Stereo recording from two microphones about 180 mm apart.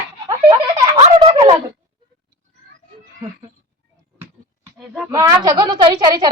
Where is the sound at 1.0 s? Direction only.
35° right (ahead or behind).